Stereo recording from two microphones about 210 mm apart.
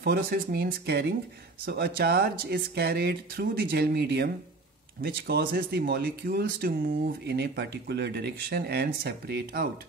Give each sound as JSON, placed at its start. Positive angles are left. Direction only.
{"t": 0.0, "sound": "speech", "side_deg": -45}